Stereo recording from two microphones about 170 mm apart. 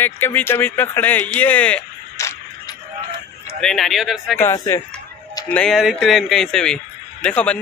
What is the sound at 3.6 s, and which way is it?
Speech, centre (ahead or behind).